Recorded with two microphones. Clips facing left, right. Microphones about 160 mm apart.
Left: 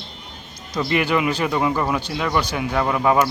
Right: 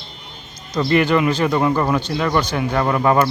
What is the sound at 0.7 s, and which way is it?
Speech, 5° left (ahead or behind).